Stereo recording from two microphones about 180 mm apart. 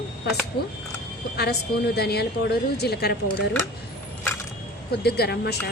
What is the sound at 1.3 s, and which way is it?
A woman's voice, 65° left (ahead or behind).